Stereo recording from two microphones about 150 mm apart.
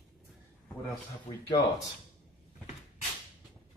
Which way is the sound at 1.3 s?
40° left (ahead or behind).